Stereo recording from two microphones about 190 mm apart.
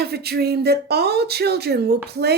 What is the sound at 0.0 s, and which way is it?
Speech, 60° right (ahead or behind).